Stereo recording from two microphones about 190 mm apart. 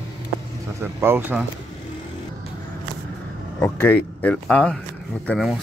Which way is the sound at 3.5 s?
10° left (ahead or behind).